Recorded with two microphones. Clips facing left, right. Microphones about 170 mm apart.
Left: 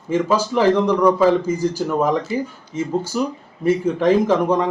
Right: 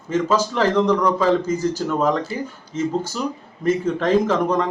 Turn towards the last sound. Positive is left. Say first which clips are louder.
# left 1 dB
turn(degrees=10)  # may be behind; listen again after turning